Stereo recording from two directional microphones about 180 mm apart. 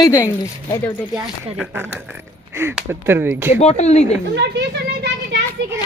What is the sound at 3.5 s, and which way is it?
Speech, 35° left (ahead or behind).